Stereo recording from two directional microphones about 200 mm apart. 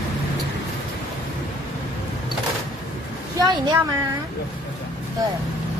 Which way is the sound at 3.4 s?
20° right (ahead or behind).